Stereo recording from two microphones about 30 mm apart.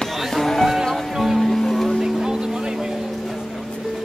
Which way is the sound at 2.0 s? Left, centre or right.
Centre.